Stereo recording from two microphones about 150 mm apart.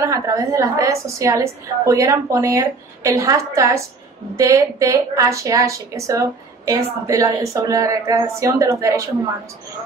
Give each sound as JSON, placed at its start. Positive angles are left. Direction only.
{"t": 0.0, "sound": "a woman's voice", "side_deg": -20}